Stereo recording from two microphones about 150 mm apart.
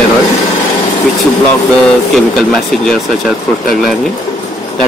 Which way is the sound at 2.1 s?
Centre (ahead or behind).